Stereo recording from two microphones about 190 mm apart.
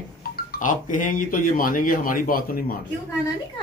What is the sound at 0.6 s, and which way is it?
Speech, 45° left (ahead or behind).